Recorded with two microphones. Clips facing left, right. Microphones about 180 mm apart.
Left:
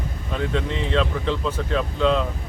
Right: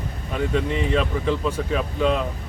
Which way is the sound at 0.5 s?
10° right (ahead or behind).